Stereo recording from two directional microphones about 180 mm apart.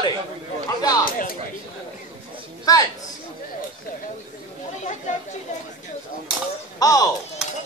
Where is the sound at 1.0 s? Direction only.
55° left (ahead or behind).